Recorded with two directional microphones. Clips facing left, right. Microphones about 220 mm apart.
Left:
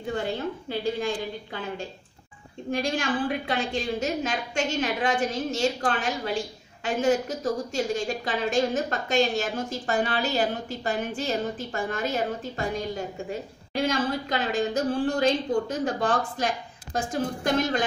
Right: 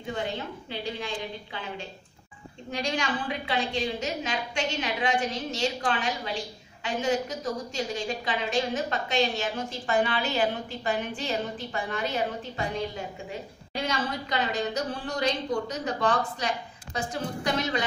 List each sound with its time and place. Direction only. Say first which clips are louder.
0.7 s a woman's voice: left 7 dB; 45° left (ahead or behind)
2.7 s a woman's voice: left 3 dB; 50° left (ahead or behind)